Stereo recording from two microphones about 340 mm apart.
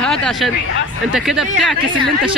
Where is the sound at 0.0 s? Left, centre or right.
Centre.